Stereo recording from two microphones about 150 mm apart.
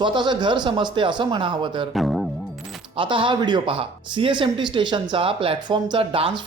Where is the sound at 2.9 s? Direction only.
35° right (ahead or behind).